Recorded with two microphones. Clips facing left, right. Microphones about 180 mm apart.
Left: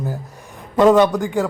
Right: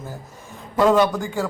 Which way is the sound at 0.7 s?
20° left (ahead or behind).